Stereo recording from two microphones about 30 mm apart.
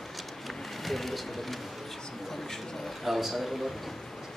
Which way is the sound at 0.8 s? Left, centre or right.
Centre.